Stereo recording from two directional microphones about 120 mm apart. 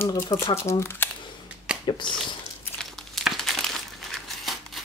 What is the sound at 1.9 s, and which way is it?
Speech, 40° left (ahead or behind).